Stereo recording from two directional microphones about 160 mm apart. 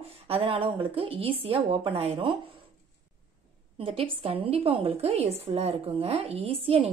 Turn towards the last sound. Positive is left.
turn(degrees=-35)  # may be behind; listen again after turning